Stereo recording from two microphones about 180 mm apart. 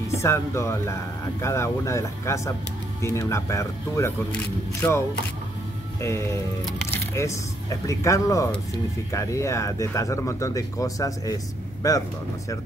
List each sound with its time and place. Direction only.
0.2 s speech: 15° left (ahead or behind)